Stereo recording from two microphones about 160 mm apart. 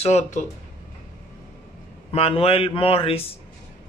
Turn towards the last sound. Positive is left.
turn(degrees=35)  # may be behind; listen again after turning